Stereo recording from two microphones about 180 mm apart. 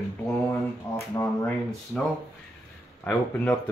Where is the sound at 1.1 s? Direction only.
10° left (ahead or behind).